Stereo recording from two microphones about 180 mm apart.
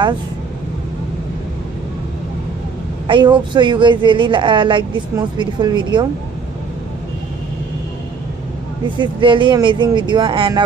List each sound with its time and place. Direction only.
3.1 s speech: 25° right (ahead or behind)
8.9 s speech: 25° right (ahead or behind)